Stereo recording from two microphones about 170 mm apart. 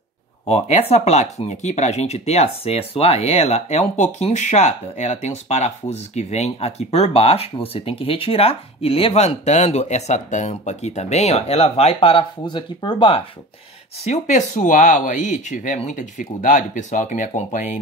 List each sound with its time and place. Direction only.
0.5 s speech: 40° left (ahead or behind)
14.0 s speech: 40° left (ahead or behind)